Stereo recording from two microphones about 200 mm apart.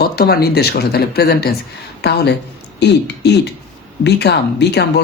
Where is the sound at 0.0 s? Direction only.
50° left (ahead or behind).